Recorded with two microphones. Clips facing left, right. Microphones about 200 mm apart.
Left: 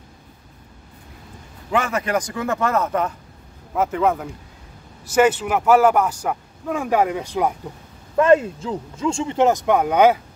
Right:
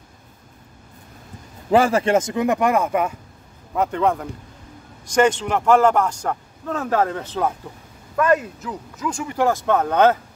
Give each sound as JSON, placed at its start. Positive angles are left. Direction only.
{"t": 1.7, "sound": "speech", "side_deg": -30}
{"t": 3.7, "sound": "a man's voice", "side_deg": 5}
{"t": 8.2, "sound": "speech", "side_deg": 25}